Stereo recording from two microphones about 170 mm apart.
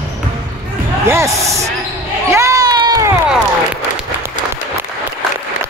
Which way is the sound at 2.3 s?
20° right (ahead or behind).